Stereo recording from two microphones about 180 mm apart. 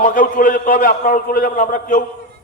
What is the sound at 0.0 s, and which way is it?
A man's voice, 50° left (ahead or behind).